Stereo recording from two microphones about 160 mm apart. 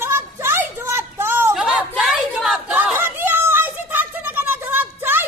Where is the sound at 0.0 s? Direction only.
15° right (ahead or behind).